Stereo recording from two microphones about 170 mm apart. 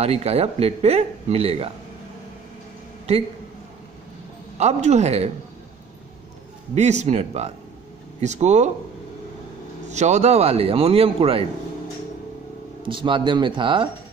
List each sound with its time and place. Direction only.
0.0 s a man's voice: 35° right (ahead or behind)
3.1 s a man's voice: 40° right (ahead or behind)
4.6 s a man's voice: 40° right (ahead or behind)
6.7 s a man's voice: 40° right (ahead or behind)
9.8 s a man's voice: 40° right (ahead or behind)
12.8 s speech: 30° right (ahead or behind)